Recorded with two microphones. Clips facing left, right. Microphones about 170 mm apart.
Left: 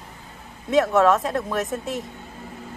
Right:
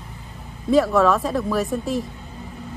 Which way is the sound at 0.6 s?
Centre (ahead or behind).